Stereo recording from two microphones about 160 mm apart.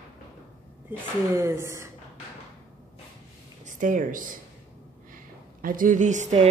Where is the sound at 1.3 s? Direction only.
20° right (ahead or behind).